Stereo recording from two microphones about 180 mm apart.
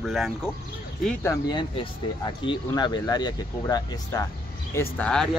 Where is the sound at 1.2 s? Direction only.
20° left (ahead or behind).